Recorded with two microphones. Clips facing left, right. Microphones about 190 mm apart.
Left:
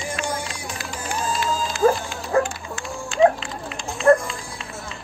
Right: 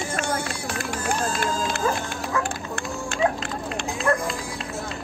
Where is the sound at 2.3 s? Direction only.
35° left (ahead or behind).